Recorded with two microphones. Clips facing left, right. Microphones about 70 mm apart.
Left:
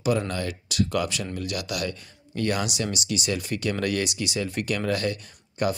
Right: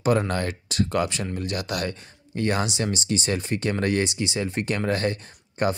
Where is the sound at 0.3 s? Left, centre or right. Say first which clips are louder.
Right 3 dB; right.